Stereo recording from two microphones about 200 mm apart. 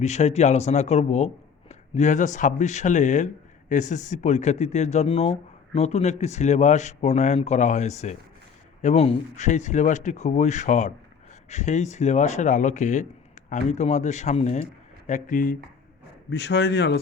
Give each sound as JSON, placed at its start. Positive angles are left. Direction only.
{"t": 0.0, "sound": "speech", "side_deg": 35}
{"t": 16.3, "sound": "speech", "side_deg": 55}